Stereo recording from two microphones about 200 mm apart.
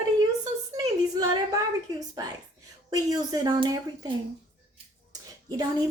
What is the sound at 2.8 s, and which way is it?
Speech, 20° right (ahead or behind).